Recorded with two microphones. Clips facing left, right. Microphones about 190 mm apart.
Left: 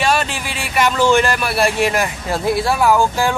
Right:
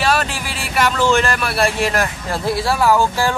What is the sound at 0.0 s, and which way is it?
A man's voice, 5° right (ahead or behind).